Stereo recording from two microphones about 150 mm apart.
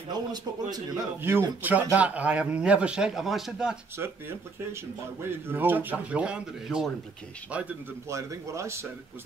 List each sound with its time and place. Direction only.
0.1 s speech: 25° right (ahead or behind)
1.2 s speech: 15° right (ahead or behind)
5.5 s speech: 15° right (ahead or behind)